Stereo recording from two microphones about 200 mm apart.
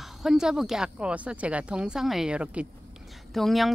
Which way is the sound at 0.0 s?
Centre (ahead or behind).